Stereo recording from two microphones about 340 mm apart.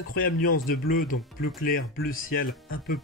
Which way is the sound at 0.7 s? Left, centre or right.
Left.